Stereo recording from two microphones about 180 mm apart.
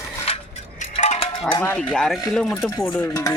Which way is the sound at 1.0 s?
35° left (ahead or behind).